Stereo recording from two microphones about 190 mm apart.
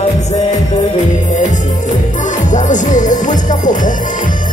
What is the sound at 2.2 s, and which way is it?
Music, 40° left (ahead or behind).